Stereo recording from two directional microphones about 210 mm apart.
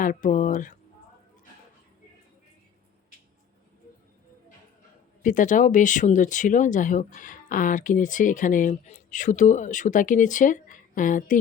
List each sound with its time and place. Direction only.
0.0 s speech: 40° left (ahead or behind)
5.2 s speech: 40° left (ahead or behind)